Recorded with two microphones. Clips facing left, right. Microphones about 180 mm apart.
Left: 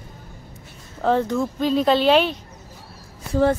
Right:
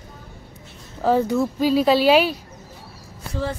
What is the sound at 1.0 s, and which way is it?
Speech, 5° right (ahead or behind).